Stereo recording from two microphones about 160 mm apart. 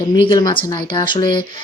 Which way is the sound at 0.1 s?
25° left (ahead or behind).